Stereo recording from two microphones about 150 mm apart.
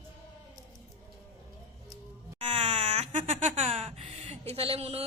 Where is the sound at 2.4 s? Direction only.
45° right (ahead or behind).